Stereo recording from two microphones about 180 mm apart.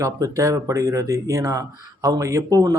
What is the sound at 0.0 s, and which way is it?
Speech, 20° right (ahead or behind).